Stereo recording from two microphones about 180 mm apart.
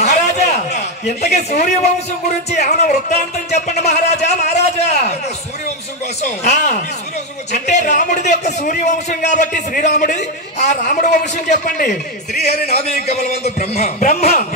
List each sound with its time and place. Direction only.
0.0 s a sound: 40° left (ahead or behind)
2.5 s a man's voice: 40° left (ahead or behind)
6.2 s a man's voice: 40° left (ahead or behind)